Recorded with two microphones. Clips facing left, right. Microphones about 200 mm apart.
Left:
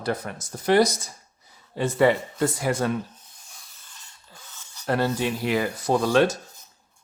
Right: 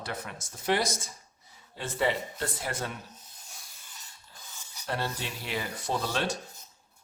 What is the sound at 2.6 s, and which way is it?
Speech, 90° left.